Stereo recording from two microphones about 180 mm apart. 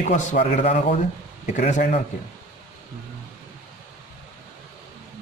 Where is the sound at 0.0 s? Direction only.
45° left (ahead or behind).